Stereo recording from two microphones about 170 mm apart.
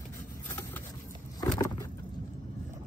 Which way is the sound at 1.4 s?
20° left (ahead or behind).